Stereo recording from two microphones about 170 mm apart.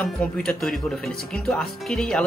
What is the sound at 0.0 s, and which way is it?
Speech, 5° left (ahead or behind).